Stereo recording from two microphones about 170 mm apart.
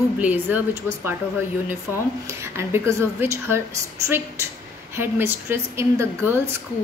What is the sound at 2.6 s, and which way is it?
Speech, 15° right (ahead or behind).